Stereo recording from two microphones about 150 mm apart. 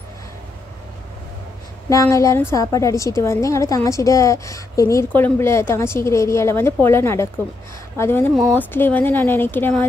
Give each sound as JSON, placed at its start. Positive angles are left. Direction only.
{"t": 1.9, "sound": "a woman's voice", "side_deg": 20}